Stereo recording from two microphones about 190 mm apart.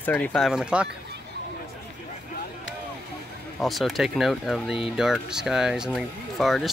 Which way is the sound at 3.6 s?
Centre (ahead or behind).